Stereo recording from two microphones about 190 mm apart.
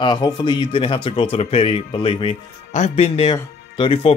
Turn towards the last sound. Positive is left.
turn(degrees=25)  # may be behind; listen again after turning